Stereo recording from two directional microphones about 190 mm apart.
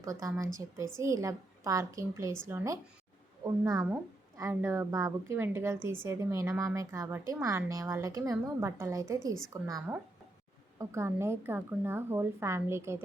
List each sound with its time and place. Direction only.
0.0 s a woman's voice: 15° right (ahead or behind)